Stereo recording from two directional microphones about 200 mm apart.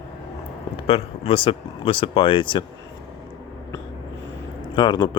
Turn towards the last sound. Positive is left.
turn(degrees=20)  # may be behind; listen again after turning